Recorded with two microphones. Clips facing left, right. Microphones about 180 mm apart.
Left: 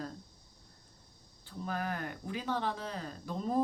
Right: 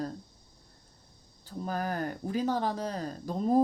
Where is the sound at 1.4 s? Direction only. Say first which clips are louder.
Right 4 dB; 40° right (ahead or behind).